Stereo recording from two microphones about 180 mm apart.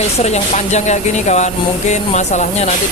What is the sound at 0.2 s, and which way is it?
Speech, 40° left (ahead or behind).